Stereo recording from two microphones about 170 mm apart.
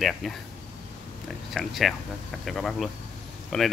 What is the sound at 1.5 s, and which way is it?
Speech, centre (ahead or behind).